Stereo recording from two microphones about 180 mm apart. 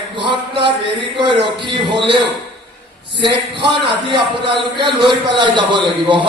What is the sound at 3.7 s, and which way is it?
Speech, 25° right (ahead or behind).